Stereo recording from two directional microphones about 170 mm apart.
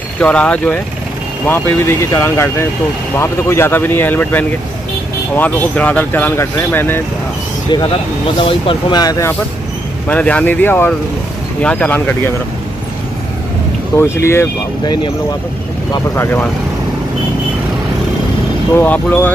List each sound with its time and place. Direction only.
0.2 s speech: 5° left (ahead or behind)
8.4 s speech: 30° left (ahead or behind)
10.0 s speech: 10° left (ahead or behind)
13.9 s speech: 15° left (ahead or behind)
15.9 s speech: 15° left (ahead or behind)
18.8 s speech: 10° left (ahead or behind)